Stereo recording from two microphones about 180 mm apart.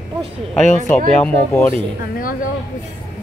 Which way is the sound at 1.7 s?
50° left (ahead or behind).